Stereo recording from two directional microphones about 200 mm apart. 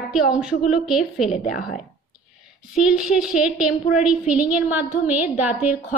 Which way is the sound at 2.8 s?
5° right (ahead or behind).